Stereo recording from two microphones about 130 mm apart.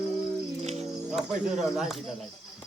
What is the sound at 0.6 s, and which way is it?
Speech, 55° right (ahead or behind).